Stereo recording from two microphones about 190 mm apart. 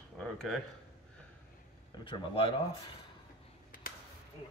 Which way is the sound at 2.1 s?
25° left (ahead or behind).